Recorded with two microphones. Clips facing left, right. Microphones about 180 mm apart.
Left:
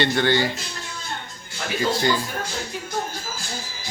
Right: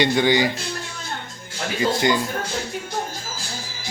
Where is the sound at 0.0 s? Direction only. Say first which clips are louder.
Right 2 dB; 15° right (ahead or behind).